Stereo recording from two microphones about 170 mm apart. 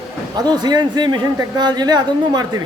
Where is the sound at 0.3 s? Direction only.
25° right (ahead or behind).